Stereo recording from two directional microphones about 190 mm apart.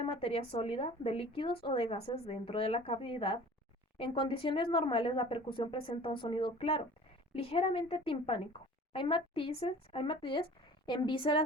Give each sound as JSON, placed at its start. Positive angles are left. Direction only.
{"t": 0.0, "sound": "a woman's voice", "side_deg": 30}